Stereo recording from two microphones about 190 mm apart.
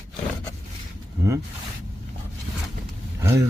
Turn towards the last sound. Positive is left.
turn(degrees=-15)  # may be behind; listen again after turning